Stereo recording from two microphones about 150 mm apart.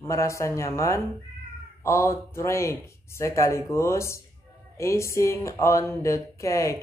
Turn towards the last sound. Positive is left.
turn(degrees=20)  # may be behind; listen again after turning